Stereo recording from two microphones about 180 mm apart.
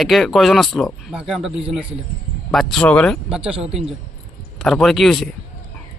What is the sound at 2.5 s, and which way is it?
Speech, 5° left (ahead or behind).